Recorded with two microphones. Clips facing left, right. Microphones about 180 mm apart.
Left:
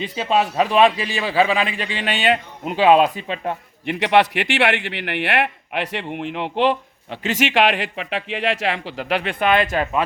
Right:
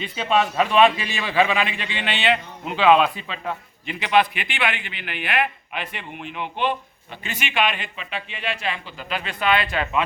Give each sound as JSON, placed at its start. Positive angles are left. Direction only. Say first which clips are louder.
{"t": 0.2, "sound": "a man's voice", "louder": "left 1 dB", "side_deg": 35}
{"t": 3.8, "sound": "a man's voice", "louder": "left 3 dB", "side_deg": 70}